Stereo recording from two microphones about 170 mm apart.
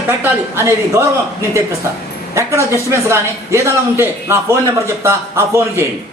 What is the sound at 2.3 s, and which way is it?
Speech, 15° right (ahead or behind).